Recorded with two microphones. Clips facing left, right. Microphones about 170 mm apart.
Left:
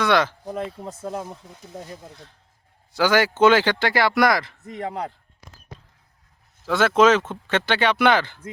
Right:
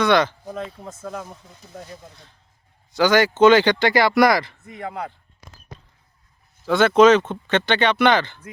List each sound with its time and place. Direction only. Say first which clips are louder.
0.0 s speech: right 2 dB; 5° left (ahead or behind)
0.8 s speech: left 2 dB; 30° left (ahead or behind)
2.9 s speech: right 2 dB; 5° left (ahead or behind)
4.6 s a man's voice: left 2 dB; 40° left (ahead or behind)
6.7 s speech: right 3 dB; 5° left (ahead or behind)